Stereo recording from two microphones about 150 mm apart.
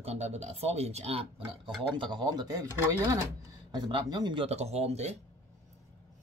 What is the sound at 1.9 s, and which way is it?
Speech, 30° right (ahead or behind).